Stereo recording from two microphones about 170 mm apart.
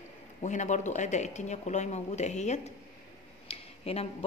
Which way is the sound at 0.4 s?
45° left (ahead or behind).